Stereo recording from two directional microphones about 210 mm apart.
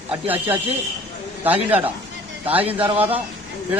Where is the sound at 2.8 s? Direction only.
25° right (ahead or behind).